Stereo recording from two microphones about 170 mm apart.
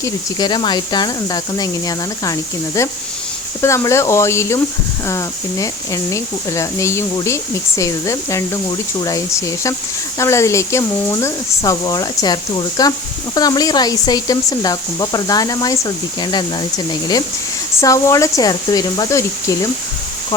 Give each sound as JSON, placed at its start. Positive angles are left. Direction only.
{"t": 0.0, "sound": "speech", "side_deg": 25}